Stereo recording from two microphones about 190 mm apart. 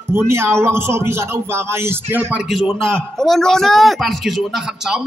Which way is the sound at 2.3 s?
Centre (ahead or behind).